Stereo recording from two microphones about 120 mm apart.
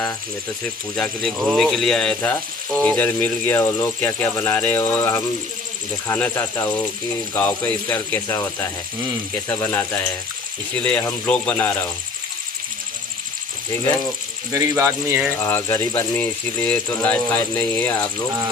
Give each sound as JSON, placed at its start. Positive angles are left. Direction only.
{"t": 0.9, "sound": "speech", "side_deg": 10}
{"t": 1.3, "sound": "cricket", "side_deg": -5}
{"t": 2.8, "sound": "speech", "side_deg": 15}
{"t": 9.5, "sound": "speech", "side_deg": 20}
{"t": 14.5, "sound": "speech", "side_deg": -25}
{"t": 15.4, "sound": "speech", "side_deg": 20}